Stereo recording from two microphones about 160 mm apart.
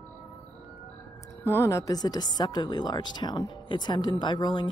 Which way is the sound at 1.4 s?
15° left (ahead or behind).